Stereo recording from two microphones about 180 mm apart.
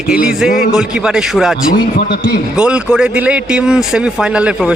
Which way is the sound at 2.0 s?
65° left (ahead or behind).